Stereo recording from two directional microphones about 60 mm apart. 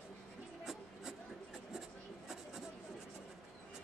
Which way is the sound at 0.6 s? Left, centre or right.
Centre.